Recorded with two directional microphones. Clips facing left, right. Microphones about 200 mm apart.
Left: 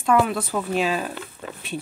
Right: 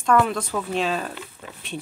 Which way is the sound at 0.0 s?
5° left (ahead or behind).